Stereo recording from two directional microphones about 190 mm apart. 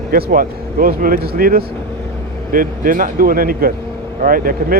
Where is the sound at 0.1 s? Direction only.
50° right (ahead or behind).